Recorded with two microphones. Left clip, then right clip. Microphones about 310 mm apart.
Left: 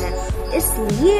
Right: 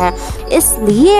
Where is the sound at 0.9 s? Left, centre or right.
Centre.